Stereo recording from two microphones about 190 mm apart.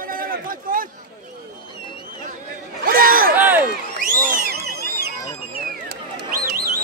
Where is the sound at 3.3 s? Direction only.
10° right (ahead or behind).